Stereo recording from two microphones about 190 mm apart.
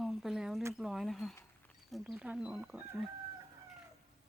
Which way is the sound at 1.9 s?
Centre (ahead or behind).